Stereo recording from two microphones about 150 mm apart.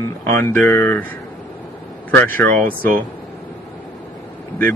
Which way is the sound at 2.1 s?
15° left (ahead or behind).